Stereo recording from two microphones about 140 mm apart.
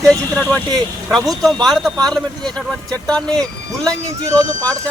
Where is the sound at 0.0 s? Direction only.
5° left (ahead or behind).